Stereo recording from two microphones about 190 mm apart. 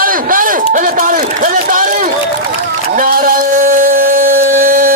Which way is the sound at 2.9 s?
45° right (ahead or behind).